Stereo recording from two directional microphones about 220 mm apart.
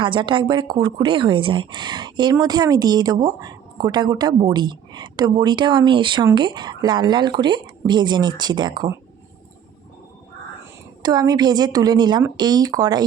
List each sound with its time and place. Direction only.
0.0 s speech: 20° right (ahead or behind)
11.0 s speech: 15° right (ahead or behind)